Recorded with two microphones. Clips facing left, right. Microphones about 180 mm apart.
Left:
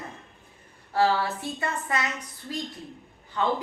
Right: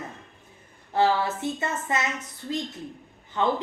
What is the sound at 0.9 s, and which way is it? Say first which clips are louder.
A woman's voice: right 1 dB; 20° right (ahead or behind).